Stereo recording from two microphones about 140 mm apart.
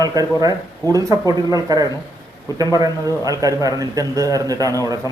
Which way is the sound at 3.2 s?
25° right (ahead or behind).